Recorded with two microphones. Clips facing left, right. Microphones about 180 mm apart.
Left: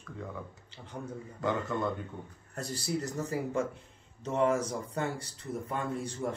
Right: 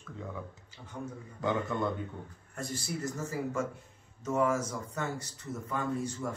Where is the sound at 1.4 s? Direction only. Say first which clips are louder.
Even; centre (ahead or behind).